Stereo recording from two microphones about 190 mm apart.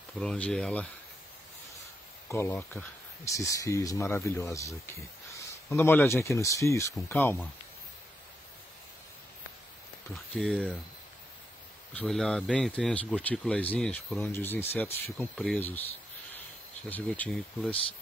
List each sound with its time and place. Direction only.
0.2 s speech: 5° left (ahead or behind)
2.2 s speech: 15° left (ahead or behind)
10.1 s speech: centre (ahead or behind)
11.9 s speech: 5° left (ahead or behind)
15.0 s speech: centre (ahead or behind)
16.9 s speech: 5° left (ahead or behind)